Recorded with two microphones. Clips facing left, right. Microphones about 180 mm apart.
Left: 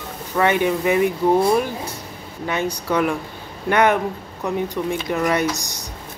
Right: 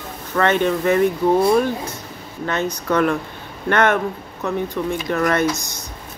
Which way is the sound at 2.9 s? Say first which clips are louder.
Right 3 dB; 10° left (ahead or behind).